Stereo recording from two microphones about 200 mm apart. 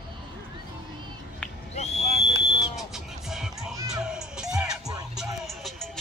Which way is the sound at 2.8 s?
Centre (ahead or behind).